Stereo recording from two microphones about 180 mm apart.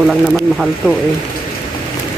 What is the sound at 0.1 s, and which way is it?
Speech, centre (ahead or behind).